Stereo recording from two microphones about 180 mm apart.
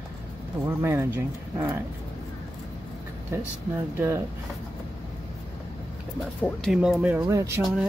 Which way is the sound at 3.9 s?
15° right (ahead or behind).